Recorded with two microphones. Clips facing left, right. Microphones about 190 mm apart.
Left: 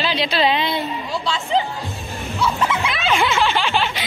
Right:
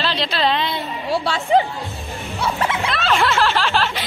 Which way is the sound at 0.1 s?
5° left (ahead or behind).